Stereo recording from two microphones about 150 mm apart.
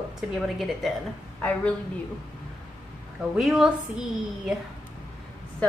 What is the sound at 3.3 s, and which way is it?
A woman's voice, 5° right (ahead or behind).